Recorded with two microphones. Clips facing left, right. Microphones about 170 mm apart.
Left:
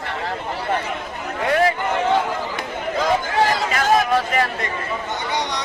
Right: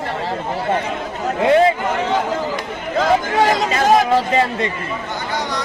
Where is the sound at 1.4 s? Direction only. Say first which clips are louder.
Right 5 dB; 25° right (ahead or behind).